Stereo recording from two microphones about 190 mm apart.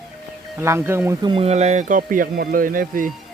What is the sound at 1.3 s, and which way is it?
Speech, 35° right (ahead or behind).